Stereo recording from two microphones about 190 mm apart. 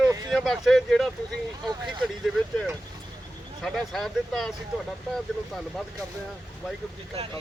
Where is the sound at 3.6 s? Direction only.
Centre (ahead or behind).